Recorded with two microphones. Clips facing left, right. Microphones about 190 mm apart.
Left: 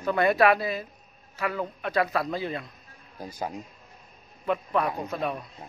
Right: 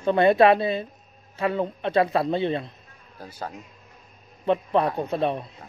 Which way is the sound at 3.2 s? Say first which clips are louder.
Left 2 dB; 15° left (ahead or behind).